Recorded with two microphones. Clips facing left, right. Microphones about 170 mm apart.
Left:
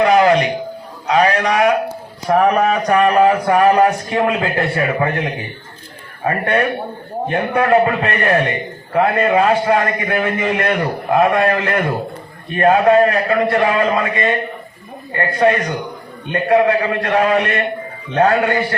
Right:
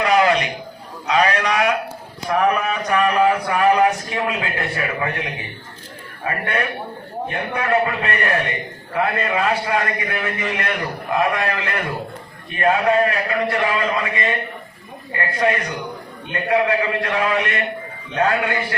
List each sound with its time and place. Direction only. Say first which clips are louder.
0.0 s a sound: left 5 dB; 45° left (ahead or behind)
2.3 s a man's voice: left 5 dB; 35° left (ahead or behind)
6.2 s a man's voice: left 7 dB; 35° left (ahead or behind)
15.4 s a man's voice: left 6 dB; 40° left (ahead or behind)